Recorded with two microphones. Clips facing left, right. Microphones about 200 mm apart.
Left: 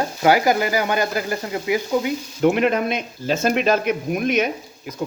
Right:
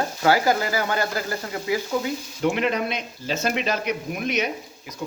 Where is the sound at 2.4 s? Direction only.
50° left (ahead or behind).